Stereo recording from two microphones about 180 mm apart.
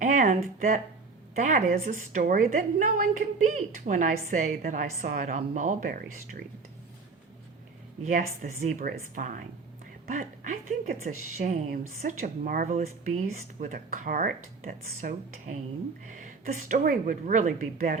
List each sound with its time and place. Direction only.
0.0 s a woman's voice: 45° right (ahead or behind)
8.0 s a woman's voice: 45° right (ahead or behind)